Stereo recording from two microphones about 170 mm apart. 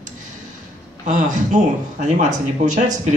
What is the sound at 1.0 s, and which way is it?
Speech, 45° right (ahead or behind).